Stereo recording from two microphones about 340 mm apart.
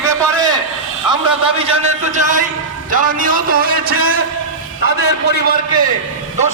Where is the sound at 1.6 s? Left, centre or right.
Right.